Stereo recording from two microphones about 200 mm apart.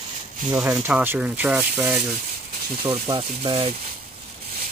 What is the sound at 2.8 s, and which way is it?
Speech, 25° right (ahead or behind).